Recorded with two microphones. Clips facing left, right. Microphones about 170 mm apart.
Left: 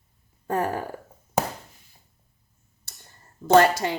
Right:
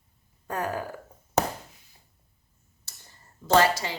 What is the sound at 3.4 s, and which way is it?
Speech, 55° left (ahead or behind).